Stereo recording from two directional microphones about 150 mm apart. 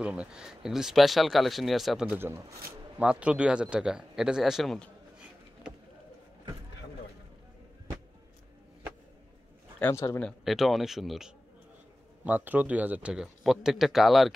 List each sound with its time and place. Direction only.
0.0 s speech: 5° right (ahead or behind)
9.8 s a man's voice: 15° left (ahead or behind)
10.2 s speech: centre (ahead or behind)